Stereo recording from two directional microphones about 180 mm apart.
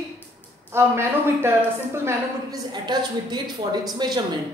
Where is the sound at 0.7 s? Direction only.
15° right (ahead or behind).